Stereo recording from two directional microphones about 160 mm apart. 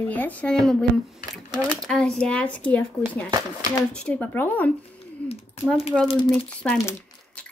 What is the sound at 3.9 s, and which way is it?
Speech, 10° left (ahead or behind).